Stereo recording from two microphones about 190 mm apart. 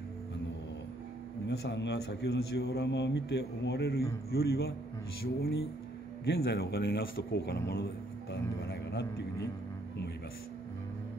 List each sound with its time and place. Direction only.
1.5 s a man's voice: 65° left (ahead or behind)